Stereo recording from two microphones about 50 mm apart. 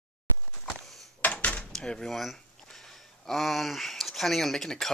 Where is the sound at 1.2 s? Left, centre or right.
Left.